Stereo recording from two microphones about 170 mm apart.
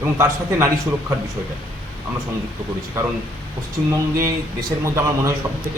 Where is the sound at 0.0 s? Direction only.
15° right (ahead or behind).